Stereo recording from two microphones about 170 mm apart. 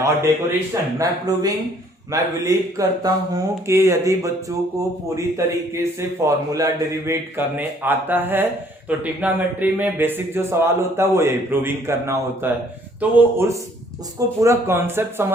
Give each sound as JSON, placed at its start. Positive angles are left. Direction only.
{"t": 0.0, "sound": "speech", "side_deg": -15}
{"t": 5.7, "sound": "speech", "side_deg": -15}